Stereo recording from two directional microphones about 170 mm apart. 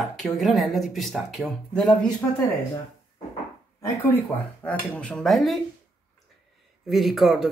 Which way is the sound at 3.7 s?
20° left (ahead or behind).